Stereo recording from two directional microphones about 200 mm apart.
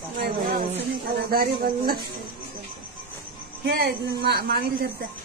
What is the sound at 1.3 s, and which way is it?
Speech, 50° right (ahead or behind).